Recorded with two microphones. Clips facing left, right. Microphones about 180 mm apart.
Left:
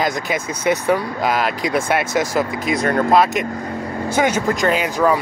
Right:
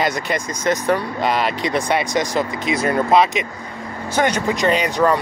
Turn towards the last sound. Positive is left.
turn(degrees=5)  # may be behind; listen again after turning